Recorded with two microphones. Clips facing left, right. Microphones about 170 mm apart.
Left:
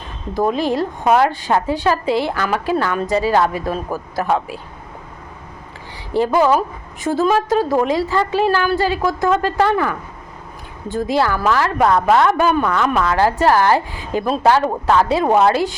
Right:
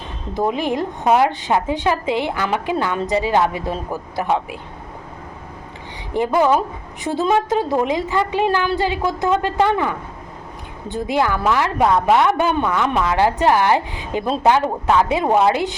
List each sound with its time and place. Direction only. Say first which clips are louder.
0.3 s a woman's voice: left 2 dB; 15° right (ahead or behind)
6.1 s a woman's voice: left 2 dB; 20° right (ahead or behind)